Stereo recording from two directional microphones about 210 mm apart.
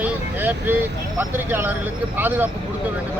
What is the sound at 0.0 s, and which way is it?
Speech, 10° right (ahead or behind).